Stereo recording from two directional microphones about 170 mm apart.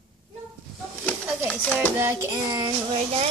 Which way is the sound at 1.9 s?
15° right (ahead or behind).